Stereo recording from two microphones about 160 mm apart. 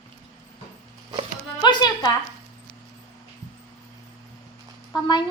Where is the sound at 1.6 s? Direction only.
25° left (ahead or behind).